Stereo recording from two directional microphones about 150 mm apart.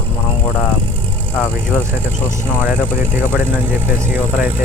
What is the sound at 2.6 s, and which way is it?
Speech, 15° right (ahead or behind).